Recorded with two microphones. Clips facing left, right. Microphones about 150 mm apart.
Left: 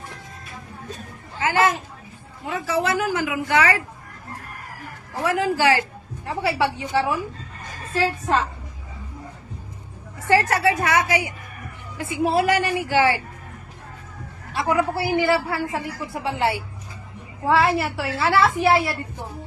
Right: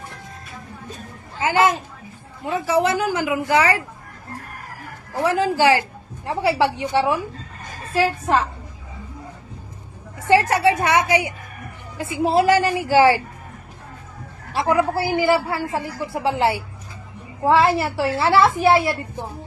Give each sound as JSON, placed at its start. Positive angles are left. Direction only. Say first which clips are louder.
{"t": 1.4, "sound": "a man's voice", "louder": "right 2 dB", "side_deg": -20}
{"t": 5.2, "sound": "a woman's voice", "louder": "right 3 dB", "side_deg": -25}
{"t": 10.2, "sound": "a woman's voice", "louder": "right 3 dB", "side_deg": -20}
{"t": 14.5, "sound": "a woman's voice", "louder": "right 3 dB", "side_deg": -25}